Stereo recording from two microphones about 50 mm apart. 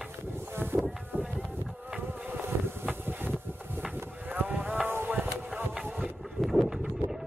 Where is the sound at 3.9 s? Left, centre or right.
Right.